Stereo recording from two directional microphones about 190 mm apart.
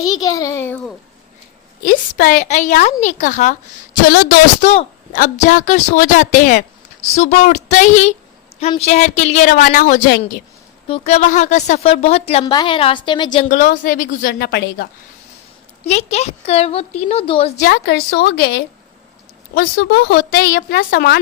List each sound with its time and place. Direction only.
0.1 s a child's voice: 20° left (ahead or behind)
1.8 s a woman's voice: 50° left (ahead or behind)
4.0 s speech: 55° left (ahead or behind)
4.6 s a woman's voice: 35° left (ahead or behind)
10.8 s a woman's voice: 30° left (ahead or behind)
13.5 s a woman's voice: 45° left (ahead or behind)
15.8 s a woman's voice: 35° left (ahead or behind)
17.7 s a woman's voice: 60° left (ahead or behind)